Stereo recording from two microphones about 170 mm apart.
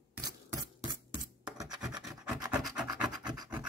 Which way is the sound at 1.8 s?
5° right (ahead or behind).